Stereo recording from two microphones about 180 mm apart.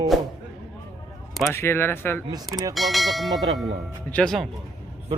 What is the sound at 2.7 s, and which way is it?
Speech, centre (ahead or behind).